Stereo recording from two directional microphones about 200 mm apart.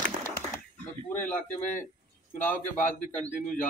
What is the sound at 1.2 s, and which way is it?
Speech, 5° left (ahead or behind).